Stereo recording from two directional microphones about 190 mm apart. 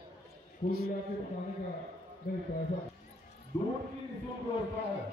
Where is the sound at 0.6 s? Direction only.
25° left (ahead or behind).